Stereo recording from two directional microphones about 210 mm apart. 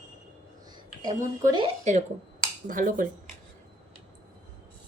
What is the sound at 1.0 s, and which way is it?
A woman's voice, 15° right (ahead or behind).